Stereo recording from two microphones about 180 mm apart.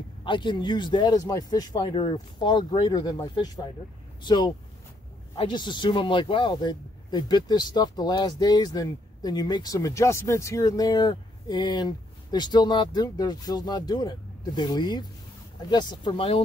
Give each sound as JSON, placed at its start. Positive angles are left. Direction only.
{"t": 0.2, "sound": "speech", "side_deg": 25}